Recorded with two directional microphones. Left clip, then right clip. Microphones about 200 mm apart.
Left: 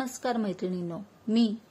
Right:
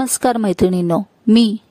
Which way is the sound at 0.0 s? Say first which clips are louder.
Right 14 dB; 60° right (ahead or behind).